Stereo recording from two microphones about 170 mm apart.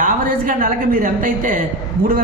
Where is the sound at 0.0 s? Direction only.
50° right (ahead or behind).